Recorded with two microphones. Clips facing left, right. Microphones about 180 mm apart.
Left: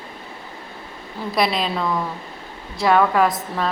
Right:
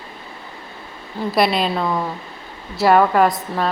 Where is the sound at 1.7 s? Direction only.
25° right (ahead or behind).